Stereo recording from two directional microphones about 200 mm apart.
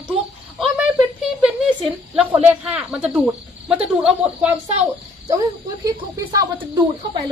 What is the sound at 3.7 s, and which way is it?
Speech, 5° right (ahead or behind).